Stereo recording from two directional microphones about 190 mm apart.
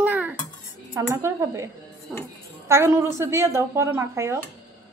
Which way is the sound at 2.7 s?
15° right (ahead or behind).